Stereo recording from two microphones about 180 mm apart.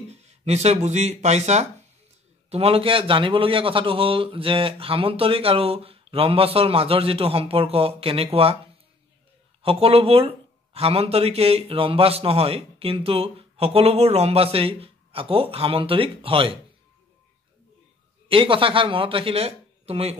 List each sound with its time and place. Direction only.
0.1 s speech: 35° right (ahead or behind)
9.6 s speech: 30° right (ahead or behind)
18.3 s speech: 30° right (ahead or behind)